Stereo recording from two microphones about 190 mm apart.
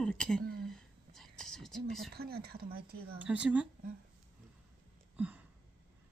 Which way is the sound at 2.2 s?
55° right (ahead or behind).